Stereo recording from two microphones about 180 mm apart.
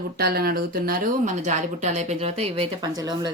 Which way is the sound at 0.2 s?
60° right (ahead or behind).